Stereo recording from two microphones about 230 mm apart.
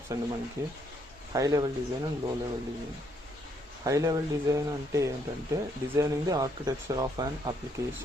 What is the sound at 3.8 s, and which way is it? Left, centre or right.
Speech, centre.